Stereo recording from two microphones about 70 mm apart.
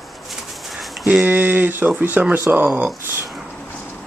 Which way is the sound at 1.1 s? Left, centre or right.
Right.